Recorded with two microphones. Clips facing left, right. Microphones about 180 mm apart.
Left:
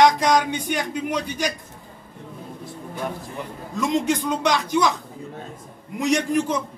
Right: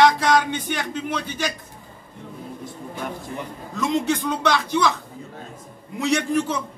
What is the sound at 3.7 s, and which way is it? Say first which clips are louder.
A man's voice: left 1 dB; 15° left (ahead or behind).